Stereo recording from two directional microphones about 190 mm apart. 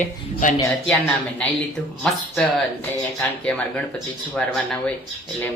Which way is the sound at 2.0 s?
5° left (ahead or behind).